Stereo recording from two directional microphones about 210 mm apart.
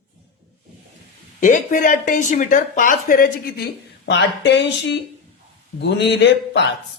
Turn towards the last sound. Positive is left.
turn(degrees=55)  # may be behind; listen again after turning